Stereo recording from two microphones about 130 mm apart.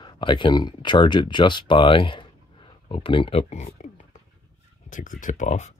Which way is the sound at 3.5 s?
65° left (ahead or behind).